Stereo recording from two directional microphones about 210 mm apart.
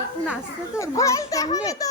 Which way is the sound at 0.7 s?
15° left (ahead or behind).